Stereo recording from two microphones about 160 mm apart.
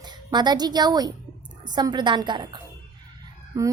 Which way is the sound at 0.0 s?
25° right (ahead or behind).